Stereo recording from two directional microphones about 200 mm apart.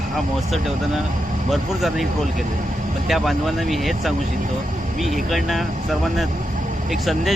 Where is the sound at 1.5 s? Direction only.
Centre (ahead or behind).